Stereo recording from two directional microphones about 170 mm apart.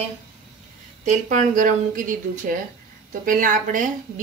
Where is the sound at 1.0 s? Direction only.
45° right (ahead or behind).